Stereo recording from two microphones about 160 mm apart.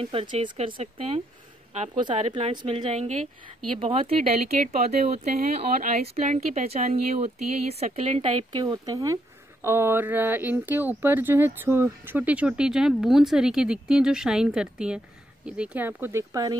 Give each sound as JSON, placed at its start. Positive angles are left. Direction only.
{"t": 0.0, "sound": "speech", "side_deg": -35}
{"t": 2.2, "sound": "speech", "side_deg": -40}